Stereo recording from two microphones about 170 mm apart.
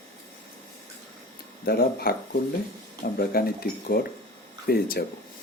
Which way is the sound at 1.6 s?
65° left (ahead or behind).